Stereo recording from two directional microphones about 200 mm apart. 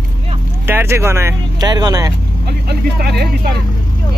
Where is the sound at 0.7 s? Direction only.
10° right (ahead or behind).